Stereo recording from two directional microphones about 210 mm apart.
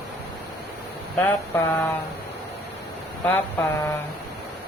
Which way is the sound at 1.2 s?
10° left (ahead or behind).